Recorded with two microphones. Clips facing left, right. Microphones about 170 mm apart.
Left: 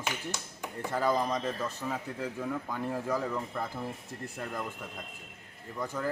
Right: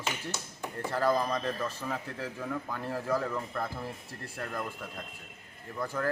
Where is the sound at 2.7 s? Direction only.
15° left (ahead or behind).